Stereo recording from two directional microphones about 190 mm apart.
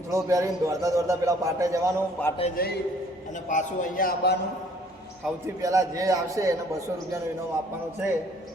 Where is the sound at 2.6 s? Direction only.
50° left (ahead or behind).